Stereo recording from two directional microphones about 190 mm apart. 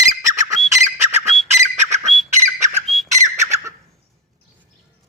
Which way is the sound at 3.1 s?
15° right (ahead or behind).